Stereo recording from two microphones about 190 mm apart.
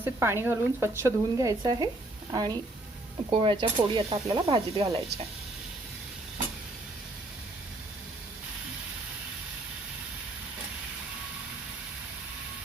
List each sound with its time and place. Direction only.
0.0 s speech: 10° right (ahead or behind)